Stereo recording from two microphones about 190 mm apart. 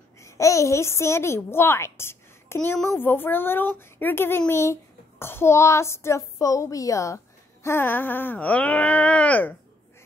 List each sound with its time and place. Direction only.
0.2 s a child's voice: 15° left (ahead or behind)